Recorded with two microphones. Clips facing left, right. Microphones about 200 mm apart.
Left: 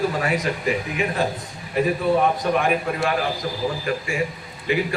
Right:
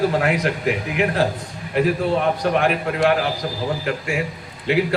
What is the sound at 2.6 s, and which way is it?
Speech, 70° right (ahead or behind).